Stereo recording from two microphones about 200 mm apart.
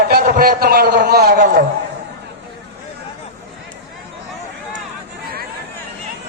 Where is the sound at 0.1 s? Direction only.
45° right (ahead or behind).